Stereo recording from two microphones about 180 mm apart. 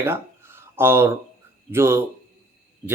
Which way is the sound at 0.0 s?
15° right (ahead or behind).